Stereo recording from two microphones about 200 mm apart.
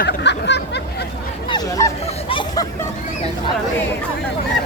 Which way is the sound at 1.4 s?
20° left (ahead or behind).